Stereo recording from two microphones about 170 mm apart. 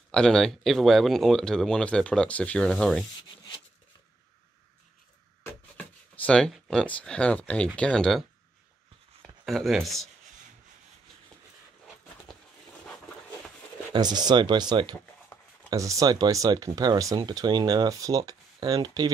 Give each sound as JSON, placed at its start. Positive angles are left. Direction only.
{"t": 0.1, "sound": "speech", "side_deg": 5}
{"t": 5.4, "sound": "speech", "side_deg": 10}
{"t": 9.5, "sound": "speech", "side_deg": 0}
{"t": 13.9, "sound": "speech", "side_deg": -25}